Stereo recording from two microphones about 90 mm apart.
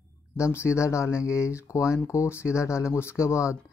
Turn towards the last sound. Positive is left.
turn(degrees=30)  # may be behind; listen again after turning